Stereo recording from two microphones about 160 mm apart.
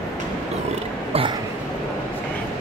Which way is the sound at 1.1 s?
35° right (ahead or behind).